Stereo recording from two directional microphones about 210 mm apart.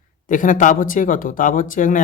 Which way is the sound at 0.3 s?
40° left (ahead or behind).